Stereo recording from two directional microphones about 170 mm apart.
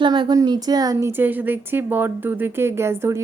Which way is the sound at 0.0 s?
25° right (ahead or behind).